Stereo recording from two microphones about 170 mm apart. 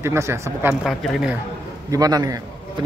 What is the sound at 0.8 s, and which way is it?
Speech, centre (ahead or behind).